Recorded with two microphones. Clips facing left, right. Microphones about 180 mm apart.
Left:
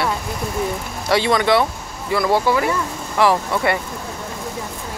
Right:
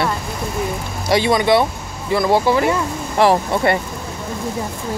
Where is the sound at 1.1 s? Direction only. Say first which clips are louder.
Right 2 dB; 15° right (ahead or behind).